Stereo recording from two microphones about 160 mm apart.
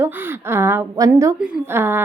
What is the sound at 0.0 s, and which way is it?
A woman's voice, 15° right (ahead or behind).